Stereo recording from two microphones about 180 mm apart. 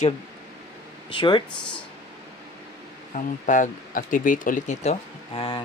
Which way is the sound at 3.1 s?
45° left (ahead or behind).